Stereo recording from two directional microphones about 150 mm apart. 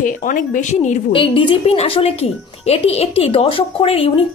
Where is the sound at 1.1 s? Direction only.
35° left (ahead or behind).